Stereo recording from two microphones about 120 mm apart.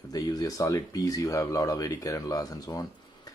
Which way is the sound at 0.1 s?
30° left (ahead or behind).